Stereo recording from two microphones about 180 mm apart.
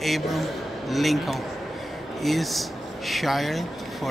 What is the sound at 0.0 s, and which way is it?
A man's voice, centre (ahead or behind).